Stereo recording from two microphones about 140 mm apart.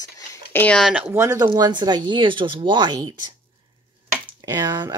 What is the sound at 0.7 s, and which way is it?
Speech, centre (ahead or behind).